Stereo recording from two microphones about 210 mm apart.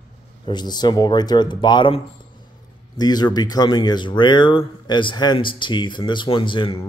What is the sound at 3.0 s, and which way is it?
Speech, 20° left (ahead or behind).